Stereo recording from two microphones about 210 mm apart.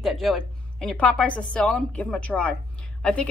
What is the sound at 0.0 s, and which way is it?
A woman's voice, centre (ahead or behind).